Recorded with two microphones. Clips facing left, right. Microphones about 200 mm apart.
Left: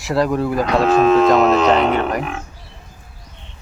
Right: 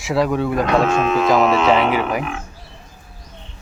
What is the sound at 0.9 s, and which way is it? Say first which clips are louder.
Speech: left 5 dB; 35° left (ahead or behind).